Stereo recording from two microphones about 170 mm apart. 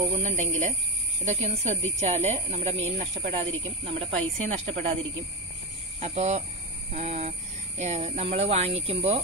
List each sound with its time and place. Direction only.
0.1 s speech: 45° right (ahead or behind)
5.9 s speech: 40° right (ahead or behind)